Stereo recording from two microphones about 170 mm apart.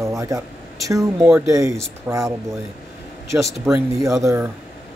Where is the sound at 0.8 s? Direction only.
20° right (ahead or behind).